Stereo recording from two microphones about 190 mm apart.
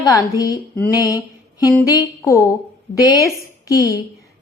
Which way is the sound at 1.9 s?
15° left (ahead or behind).